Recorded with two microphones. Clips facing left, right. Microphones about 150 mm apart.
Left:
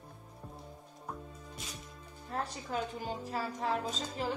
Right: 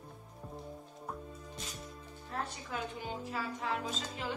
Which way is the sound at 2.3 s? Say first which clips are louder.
Left 3 dB; 40° left (ahead or behind).